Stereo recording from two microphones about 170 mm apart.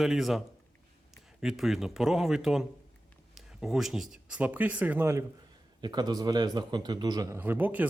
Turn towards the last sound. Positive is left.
turn(degrees=-10)  # may be behind; listen again after turning